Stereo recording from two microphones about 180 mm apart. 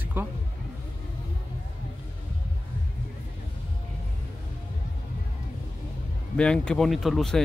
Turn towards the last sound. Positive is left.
turn(degrees=0)  # may be behind; listen again after turning